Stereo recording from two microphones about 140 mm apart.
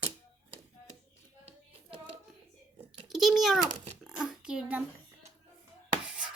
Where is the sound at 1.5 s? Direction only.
50° right (ahead or behind).